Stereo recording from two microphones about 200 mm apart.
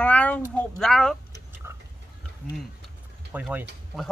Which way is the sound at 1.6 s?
10° right (ahead or behind).